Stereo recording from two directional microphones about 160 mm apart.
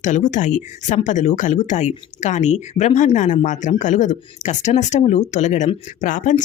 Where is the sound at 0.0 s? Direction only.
50° left (ahead or behind).